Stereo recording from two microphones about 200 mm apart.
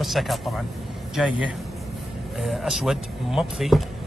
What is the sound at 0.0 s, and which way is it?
Speech, centre (ahead or behind).